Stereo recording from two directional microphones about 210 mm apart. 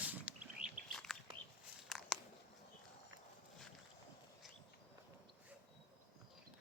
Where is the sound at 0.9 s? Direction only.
Centre (ahead or behind).